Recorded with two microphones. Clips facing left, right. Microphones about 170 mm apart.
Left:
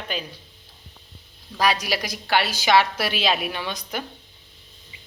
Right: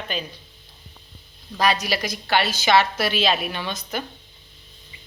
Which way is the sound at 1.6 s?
10° left (ahead or behind).